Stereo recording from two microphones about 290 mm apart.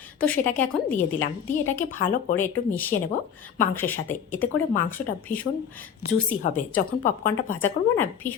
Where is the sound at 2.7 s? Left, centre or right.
Centre.